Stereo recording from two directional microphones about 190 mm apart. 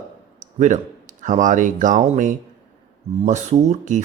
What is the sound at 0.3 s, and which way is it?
Speech, 40° right (ahead or behind).